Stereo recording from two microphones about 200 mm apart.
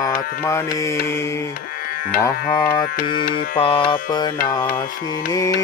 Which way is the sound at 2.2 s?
20° left (ahead or behind).